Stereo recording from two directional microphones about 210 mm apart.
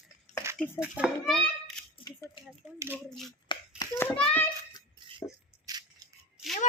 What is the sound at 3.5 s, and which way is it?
Hands, 15° left (ahead or behind).